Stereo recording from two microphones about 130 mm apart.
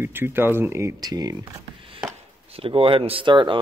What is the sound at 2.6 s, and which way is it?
Speech, 45° right (ahead or behind).